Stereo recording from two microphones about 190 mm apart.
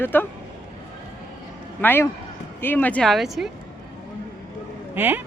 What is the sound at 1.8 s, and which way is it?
Speech, 10° left (ahead or behind).